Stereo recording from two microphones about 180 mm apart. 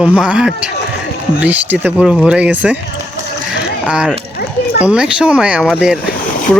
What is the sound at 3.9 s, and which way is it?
Speech, 5° right (ahead or behind).